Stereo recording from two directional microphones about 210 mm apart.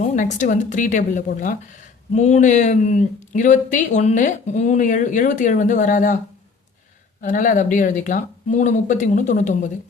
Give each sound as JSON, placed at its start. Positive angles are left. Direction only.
{"t": 0.0, "sound": "a woman's voice", "side_deg": 35}
{"t": 7.2, "sound": "a woman's voice", "side_deg": 40}